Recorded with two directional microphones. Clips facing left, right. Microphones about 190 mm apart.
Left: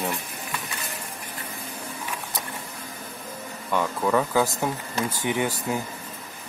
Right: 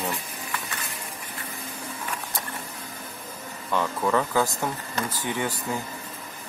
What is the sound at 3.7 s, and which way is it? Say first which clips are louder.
Speech: left 1 dB; 5° left (ahead or behind).